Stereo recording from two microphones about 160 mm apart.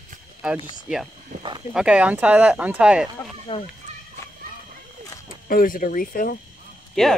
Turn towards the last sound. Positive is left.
turn(degrees=5)  # may be behind; listen again after turning